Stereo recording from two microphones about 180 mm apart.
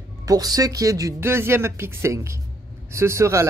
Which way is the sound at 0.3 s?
20° right (ahead or behind).